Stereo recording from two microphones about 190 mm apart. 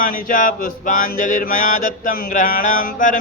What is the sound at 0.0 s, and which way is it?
Mantra, 45° left (ahead or behind).